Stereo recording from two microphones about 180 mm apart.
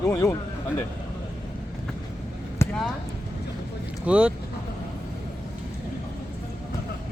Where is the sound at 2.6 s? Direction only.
15° left (ahead or behind).